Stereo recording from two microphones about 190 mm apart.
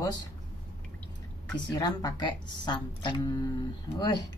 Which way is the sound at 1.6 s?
20° left (ahead or behind).